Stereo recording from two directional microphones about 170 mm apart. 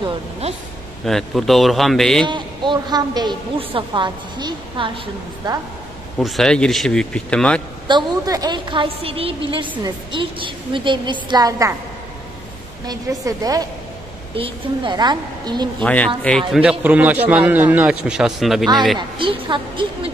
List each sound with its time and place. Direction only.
1.0 s speech: centre (ahead or behind)
2.2 s a woman's voice: 25° right (ahead or behind)
6.1 s speech: centre (ahead or behind)
7.9 s a woman's voice: 25° right (ahead or behind)
12.8 s a woman's voice: 20° right (ahead or behind)
15.8 s a man's voice: 10° left (ahead or behind)
18.9 s a woman's voice: 30° right (ahead or behind)